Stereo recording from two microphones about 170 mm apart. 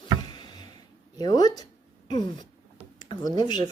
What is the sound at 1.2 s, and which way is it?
Speech, 25° left (ahead or behind).